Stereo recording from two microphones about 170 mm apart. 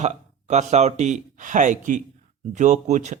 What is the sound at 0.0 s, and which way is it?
Speech, 40° right (ahead or behind).